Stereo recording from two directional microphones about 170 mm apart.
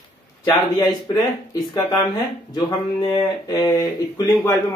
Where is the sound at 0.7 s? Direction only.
25° left (ahead or behind).